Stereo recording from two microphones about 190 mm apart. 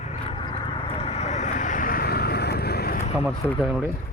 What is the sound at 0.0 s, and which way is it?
Vehicle, 30° left (ahead or behind).